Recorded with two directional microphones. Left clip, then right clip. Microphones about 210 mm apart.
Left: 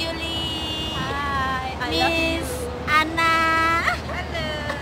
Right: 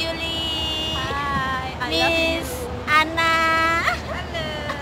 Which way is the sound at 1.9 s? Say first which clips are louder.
Right 2 dB; 25° right (ahead or behind).